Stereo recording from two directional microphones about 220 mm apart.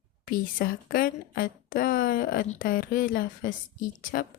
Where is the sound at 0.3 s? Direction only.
40° left (ahead or behind).